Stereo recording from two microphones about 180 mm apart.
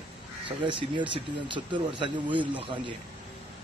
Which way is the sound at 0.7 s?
25° right (ahead or behind).